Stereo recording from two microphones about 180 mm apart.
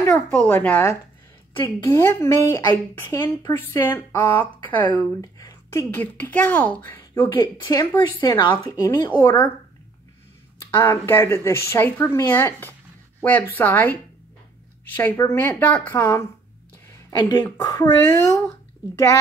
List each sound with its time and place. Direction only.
0.1 s speech: 5° left (ahead or behind)
7.3 s speech: 25° left (ahead or behind)
10.8 s speech: 10° left (ahead or behind)